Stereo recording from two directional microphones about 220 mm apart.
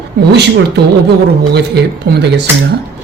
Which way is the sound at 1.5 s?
50° right (ahead or behind).